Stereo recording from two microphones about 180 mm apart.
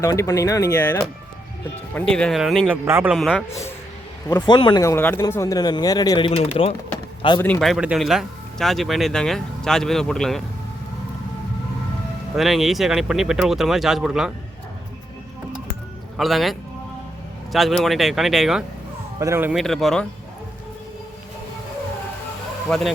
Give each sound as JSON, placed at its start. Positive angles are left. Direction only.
{"t": 0.0, "sound": "speech", "side_deg": 20}
{"t": 2.6, "sound": "speech", "side_deg": -10}
{"t": 4.3, "sound": "speech", "side_deg": 25}
{"t": 7.3, "sound": "speech", "side_deg": 10}
{"t": 12.4, "sound": "speech", "side_deg": 0}
{"t": 16.1, "sound": "speech", "side_deg": 0}
{"t": 19.2, "sound": "speech", "side_deg": -15}
{"t": 19.5, "sound": "speech", "side_deg": 0}